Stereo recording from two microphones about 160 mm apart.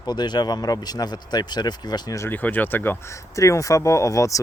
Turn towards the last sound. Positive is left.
turn(degrees=20)  # may be behind; listen again after turning